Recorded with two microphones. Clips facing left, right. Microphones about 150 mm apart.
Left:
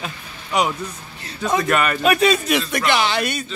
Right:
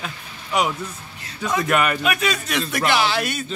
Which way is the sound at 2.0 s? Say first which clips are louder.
Left 6 dB; 30° left (ahead or behind).